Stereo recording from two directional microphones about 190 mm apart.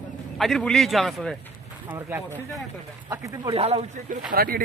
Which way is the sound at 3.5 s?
30° right (ahead or behind).